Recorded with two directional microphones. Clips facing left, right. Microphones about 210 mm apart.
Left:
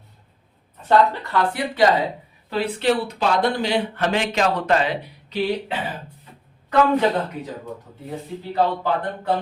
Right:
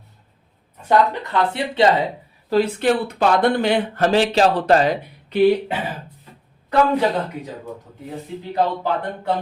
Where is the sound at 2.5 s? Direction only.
50° right (ahead or behind).